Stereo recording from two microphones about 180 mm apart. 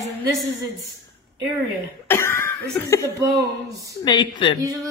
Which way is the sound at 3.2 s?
20° right (ahead or behind).